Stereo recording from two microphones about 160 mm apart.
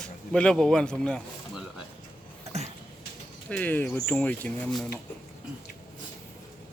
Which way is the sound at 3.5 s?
10° left (ahead or behind).